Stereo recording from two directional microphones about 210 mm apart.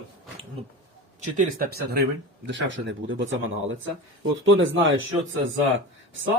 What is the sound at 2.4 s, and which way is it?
Speech, 60° right (ahead or behind).